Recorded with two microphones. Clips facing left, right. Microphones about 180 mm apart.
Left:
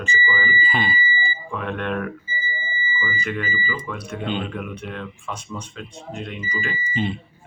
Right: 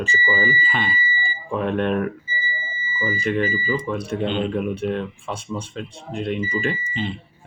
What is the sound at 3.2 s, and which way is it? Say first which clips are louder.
Speech: right 7 dB; 30° right (ahead or behind).